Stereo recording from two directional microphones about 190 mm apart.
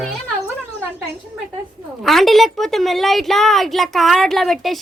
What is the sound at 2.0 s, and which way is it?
A woman's voice, centre (ahead or behind).